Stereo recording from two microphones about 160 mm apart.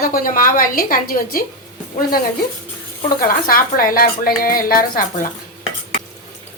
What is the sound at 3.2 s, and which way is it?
A woman's voice, 65° left (ahead or behind).